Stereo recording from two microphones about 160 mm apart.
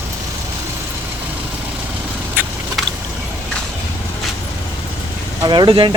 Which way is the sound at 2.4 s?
10° right (ahead or behind).